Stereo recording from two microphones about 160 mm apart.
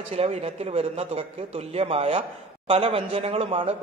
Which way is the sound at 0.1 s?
40° right (ahead or behind).